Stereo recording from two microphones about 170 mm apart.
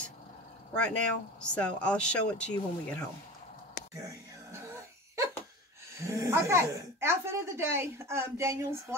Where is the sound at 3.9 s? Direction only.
20° right (ahead or behind).